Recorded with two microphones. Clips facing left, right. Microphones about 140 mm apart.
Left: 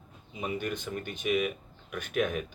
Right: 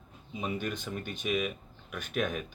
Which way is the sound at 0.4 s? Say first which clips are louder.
Left 1 dB; 15° left (ahead or behind).